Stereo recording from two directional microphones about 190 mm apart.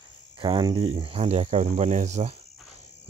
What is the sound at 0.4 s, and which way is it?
Speech, 25° right (ahead or behind).